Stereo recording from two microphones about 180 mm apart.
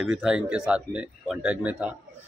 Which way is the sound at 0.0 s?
Centre (ahead or behind).